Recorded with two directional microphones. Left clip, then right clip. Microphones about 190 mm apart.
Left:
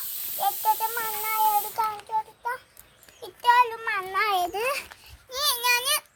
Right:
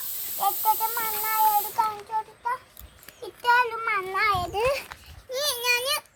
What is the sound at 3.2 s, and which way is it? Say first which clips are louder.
Child singing: left 2 dB; 30° left (ahead or behind).